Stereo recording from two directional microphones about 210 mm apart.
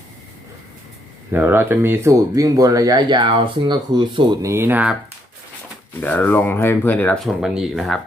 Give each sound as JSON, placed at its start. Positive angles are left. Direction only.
{"t": 1.3, "sound": "speech", "side_deg": -10}
{"t": 6.0, "sound": "speech", "side_deg": 10}
{"t": 7.4, "sound": "speech", "side_deg": 0}